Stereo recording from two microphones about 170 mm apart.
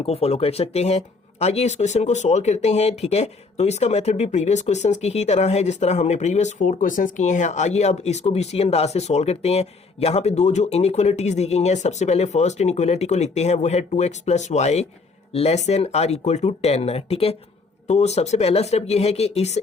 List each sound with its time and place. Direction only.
0.0 s speech: 35° left (ahead or behind)